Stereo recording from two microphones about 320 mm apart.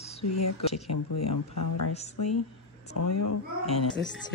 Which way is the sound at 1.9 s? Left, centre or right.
Centre.